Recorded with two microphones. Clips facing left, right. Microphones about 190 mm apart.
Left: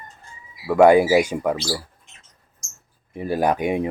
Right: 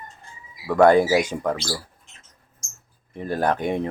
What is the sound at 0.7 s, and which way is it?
Speech, 10° left (ahead or behind).